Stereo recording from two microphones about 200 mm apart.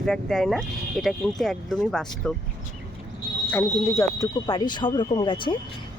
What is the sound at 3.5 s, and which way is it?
Speech, 15° left (ahead or behind).